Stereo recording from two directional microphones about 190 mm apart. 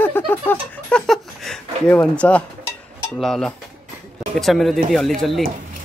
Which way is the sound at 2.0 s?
5° left (ahead or behind).